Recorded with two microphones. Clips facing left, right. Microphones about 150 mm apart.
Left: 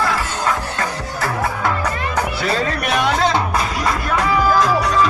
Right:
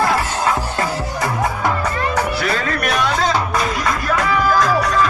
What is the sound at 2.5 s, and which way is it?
Music, 30° left (ahead or behind).